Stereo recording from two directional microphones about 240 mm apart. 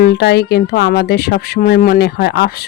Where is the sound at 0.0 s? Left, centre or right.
Left.